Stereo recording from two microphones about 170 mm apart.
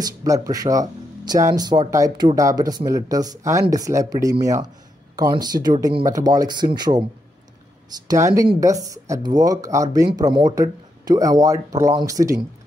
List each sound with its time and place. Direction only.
0.0 s speech: 20° right (ahead or behind)
8.1 s speech: 20° right (ahead or behind)